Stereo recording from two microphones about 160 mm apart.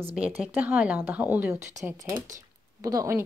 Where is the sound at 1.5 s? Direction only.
50° right (ahead or behind).